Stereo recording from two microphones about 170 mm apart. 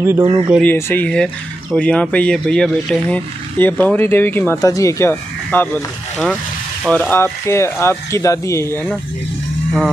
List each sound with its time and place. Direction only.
0.2 s speech: 30° right (ahead or behind)
0.6 s speech: 10° left (ahead or behind)